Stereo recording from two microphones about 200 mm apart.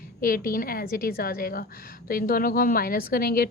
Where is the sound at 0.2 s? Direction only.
45° left (ahead or behind).